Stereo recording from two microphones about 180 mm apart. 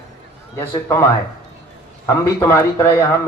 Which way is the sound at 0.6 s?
15° left (ahead or behind).